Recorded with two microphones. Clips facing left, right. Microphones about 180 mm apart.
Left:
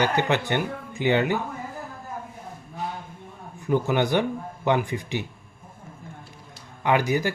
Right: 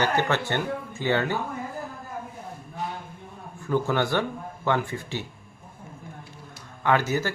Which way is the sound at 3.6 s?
15° left (ahead or behind).